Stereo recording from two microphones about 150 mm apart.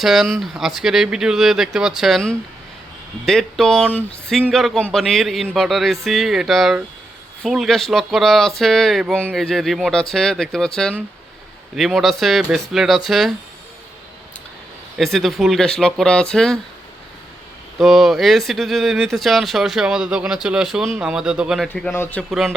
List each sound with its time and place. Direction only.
0.0 s speech: centre (ahead or behind)
11.9 s speech: centre (ahead or behind)
14.9 s speech: centre (ahead or behind)
17.7 s speech: centre (ahead or behind)
21.9 s speech: 15° left (ahead or behind)
22.3 s speech: centre (ahead or behind)